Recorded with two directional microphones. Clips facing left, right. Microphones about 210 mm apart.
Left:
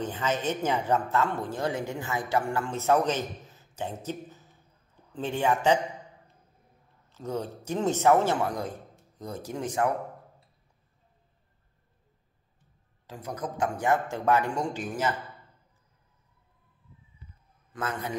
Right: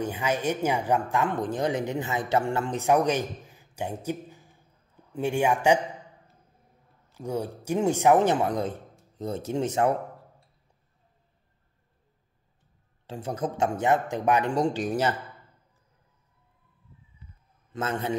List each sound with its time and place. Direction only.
0.0 s speech: 10° right (ahead or behind)
7.2 s speech: 10° right (ahead or behind)
13.0 s speech: 30° right (ahead or behind)
14.5 s speech: 35° right (ahead or behind)
17.7 s speech: 25° right (ahead or behind)